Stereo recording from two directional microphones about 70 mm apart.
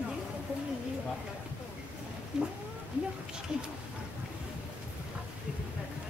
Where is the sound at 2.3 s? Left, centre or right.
Centre.